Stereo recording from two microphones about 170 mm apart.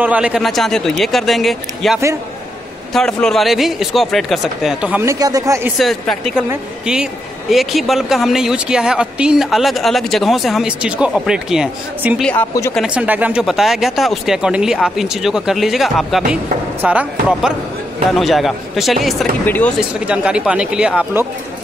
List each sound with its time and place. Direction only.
0.0 s speech: 5° right (ahead or behind)
5.2 s speech: 20° right (ahead or behind)
5.8 s speech: centre (ahead or behind)
12.2 s speech: 5° left (ahead or behind)
12.7 s speech: 5° right (ahead or behind)
19.4 s speech: 10° left (ahead or behind)
19.8 s speech: 5° right (ahead or behind)